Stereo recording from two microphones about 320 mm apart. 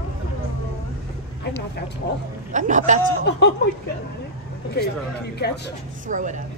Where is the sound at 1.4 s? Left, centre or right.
Left.